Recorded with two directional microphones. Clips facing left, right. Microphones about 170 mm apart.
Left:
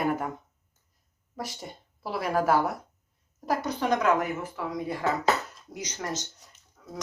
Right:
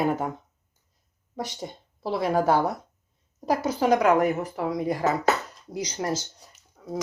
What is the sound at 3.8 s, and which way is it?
A woman's voice, 35° right (ahead or behind).